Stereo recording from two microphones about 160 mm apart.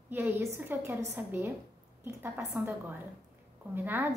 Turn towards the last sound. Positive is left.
turn(degrees=-10)  # may be behind; listen again after turning